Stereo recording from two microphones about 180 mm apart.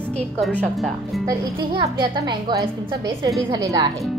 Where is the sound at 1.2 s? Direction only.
20° right (ahead or behind).